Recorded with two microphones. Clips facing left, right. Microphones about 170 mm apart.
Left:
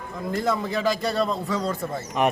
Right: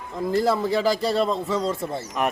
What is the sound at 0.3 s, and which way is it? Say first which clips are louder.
A man's voice: right 4 dB; 30° right (ahead or behind).